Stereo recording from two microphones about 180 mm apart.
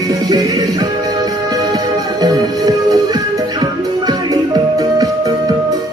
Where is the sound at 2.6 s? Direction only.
20° right (ahead or behind).